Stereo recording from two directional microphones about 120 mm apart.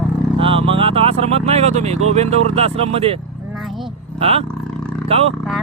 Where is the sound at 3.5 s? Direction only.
Centre (ahead or behind).